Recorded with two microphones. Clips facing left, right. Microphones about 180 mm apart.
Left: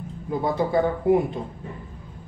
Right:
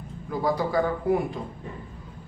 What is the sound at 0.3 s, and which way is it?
Speech, 25° left (ahead or behind).